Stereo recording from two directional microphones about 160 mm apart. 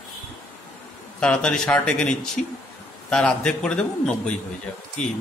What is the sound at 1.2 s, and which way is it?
Speech, 5° left (ahead or behind).